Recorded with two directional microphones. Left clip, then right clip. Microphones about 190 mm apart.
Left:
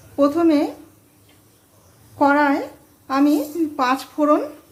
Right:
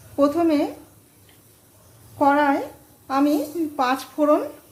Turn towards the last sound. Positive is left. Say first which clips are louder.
# left 2 dB
turn(degrees=10)  # may be behind; listen again after turning